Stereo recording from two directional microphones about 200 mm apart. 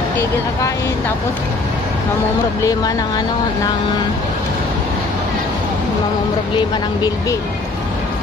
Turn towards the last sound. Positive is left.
turn(degrees=20)  # may be behind; listen again after turning